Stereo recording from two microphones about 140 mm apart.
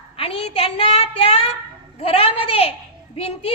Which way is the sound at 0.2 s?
45° left (ahead or behind).